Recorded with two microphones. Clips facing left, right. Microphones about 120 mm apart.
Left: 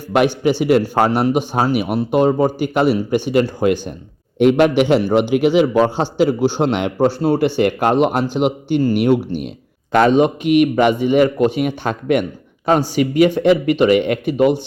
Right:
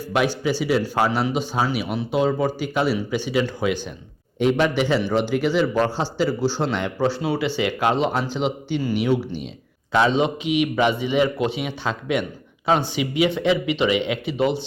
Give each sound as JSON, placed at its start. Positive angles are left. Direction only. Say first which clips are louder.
{"t": 0.6, "sound": "a man's voice", "louder": "left 6 dB", "side_deg": 55}
{"t": 4.4, "sound": "a man's voice", "louder": "left 7 dB", "side_deg": 60}